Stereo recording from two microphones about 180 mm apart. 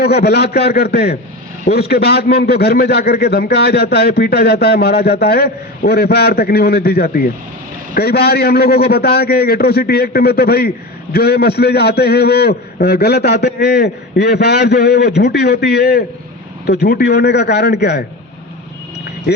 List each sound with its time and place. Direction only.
0.0 s a man's voice: 60° left (ahead or behind)